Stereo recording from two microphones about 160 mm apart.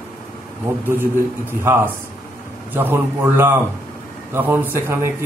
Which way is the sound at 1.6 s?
15° right (ahead or behind).